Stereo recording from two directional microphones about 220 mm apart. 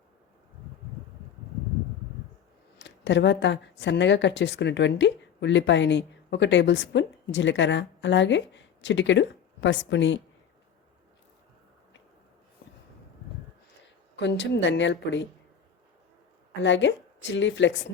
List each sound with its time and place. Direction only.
2.7 s speech: 55° left (ahead or behind)
14.2 s a woman's voice: 55° left (ahead or behind)
16.6 s a woman's voice: 55° left (ahead or behind)